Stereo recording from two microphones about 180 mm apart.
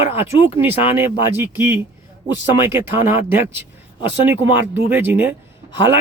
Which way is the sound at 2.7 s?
10° right (ahead or behind).